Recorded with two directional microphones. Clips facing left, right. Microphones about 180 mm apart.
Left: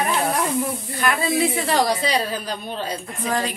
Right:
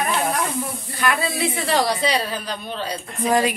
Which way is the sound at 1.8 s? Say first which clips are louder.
Even; 45° left (ahead or behind).